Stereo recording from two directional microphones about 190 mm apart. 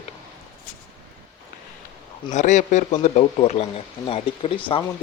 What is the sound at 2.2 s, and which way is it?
Speech, 40° left (ahead or behind).